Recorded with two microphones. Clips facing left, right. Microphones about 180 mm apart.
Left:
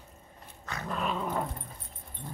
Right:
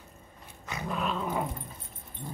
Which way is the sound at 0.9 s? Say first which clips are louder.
Even; centre (ahead or behind).